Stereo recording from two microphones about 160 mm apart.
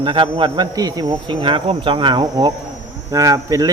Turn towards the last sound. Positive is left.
turn(degrees=-20)  # may be behind; listen again after turning